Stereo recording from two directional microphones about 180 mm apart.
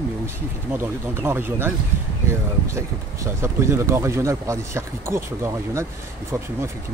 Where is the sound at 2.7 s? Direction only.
15° right (ahead or behind).